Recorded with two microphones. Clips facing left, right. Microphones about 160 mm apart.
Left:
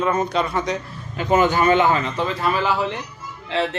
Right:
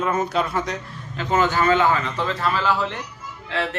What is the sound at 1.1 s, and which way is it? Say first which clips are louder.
Speech: left 3 dB; 15° left (ahead or behind).